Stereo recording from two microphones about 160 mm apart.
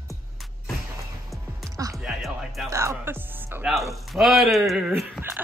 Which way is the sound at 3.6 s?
Centre (ahead or behind).